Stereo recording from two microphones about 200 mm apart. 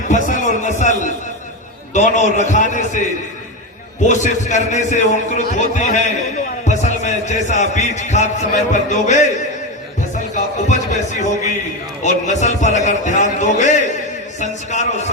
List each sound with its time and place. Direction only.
0.1 s a sound: 40° left (ahead or behind)
1.9 s a man's voice: 35° left (ahead or behind)
10.3 s a man's voice: 40° left (ahead or behind)